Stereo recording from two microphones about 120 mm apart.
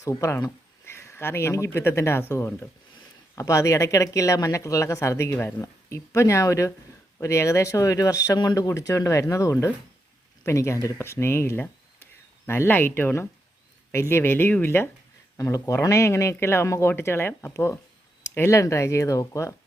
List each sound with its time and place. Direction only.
0.0 s speech: 25° left (ahead or behind)